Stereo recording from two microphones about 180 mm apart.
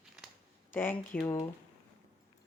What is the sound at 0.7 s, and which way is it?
Speech, 10° left (ahead or behind).